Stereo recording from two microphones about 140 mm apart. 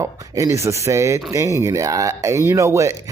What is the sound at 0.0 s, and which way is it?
Speech, 25° right (ahead or behind).